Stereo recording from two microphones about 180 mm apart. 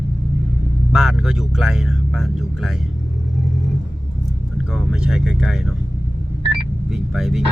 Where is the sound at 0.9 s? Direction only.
5° right (ahead or behind).